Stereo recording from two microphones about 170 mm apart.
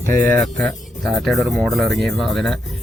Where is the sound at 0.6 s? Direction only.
5° left (ahead or behind).